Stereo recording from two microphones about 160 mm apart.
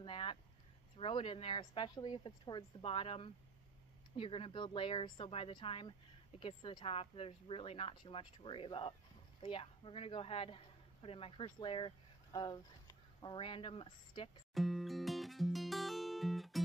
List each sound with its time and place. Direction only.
0.0 s a sound: 35° left (ahead or behind)
0.9 s speech: 35° left (ahead or behind)
14.5 s music: centre (ahead or behind)